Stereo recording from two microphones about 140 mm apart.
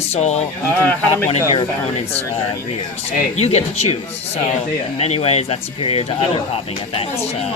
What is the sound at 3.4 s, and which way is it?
Speech, 50° left (ahead or behind).